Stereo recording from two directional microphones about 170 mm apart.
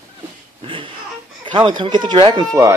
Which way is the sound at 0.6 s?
30° right (ahead or behind).